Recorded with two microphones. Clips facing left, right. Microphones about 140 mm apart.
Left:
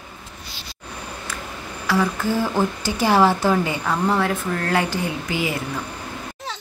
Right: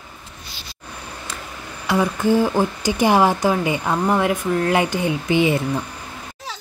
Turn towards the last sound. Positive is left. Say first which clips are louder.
# right 7 dB
turn(degrees=-25)  # may be behind; listen again after turning